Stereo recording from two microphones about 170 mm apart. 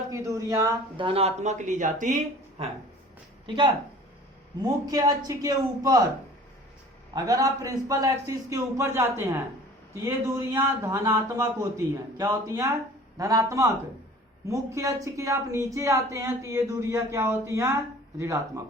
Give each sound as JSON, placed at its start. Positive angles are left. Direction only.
{"t": 0.1, "sound": "speech", "side_deg": -15}
{"t": 3.4, "sound": "a man's voice", "side_deg": -30}
{"t": 7.1, "sound": "a man's voice", "side_deg": -20}